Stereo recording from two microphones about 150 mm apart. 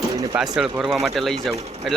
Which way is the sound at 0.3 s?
5° right (ahead or behind).